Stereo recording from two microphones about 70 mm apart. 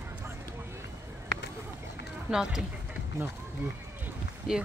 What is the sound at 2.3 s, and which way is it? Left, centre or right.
Speech, right.